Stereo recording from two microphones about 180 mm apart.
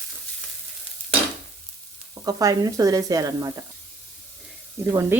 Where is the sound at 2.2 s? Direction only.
20° right (ahead or behind).